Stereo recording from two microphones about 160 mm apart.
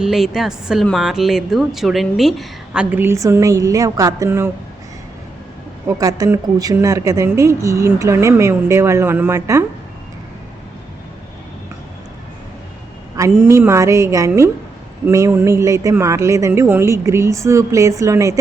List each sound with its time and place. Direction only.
0.0 s a woman's voice: centre (ahead or behind)
2.9 s speech: 15° right (ahead or behind)
5.9 s speech: 20° right (ahead or behind)
13.1 s speech: 20° right (ahead or behind)